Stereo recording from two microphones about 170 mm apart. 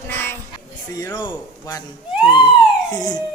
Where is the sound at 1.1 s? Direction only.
25° left (ahead or behind).